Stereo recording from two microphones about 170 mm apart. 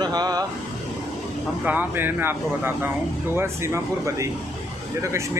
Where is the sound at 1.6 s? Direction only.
10° right (ahead or behind).